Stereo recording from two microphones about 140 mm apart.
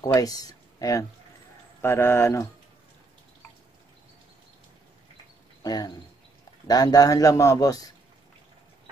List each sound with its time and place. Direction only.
0.0 s speech: 25° left (ahead or behind)
5.6 s a man's voice: 25° left (ahead or behind)